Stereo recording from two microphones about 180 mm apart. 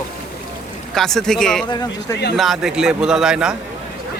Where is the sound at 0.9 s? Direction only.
Centre (ahead or behind).